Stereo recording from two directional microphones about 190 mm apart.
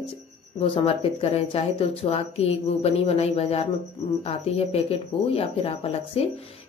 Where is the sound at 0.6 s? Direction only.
30° left (ahead or behind).